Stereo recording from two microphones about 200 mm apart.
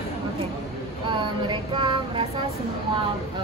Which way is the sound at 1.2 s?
25° right (ahead or behind).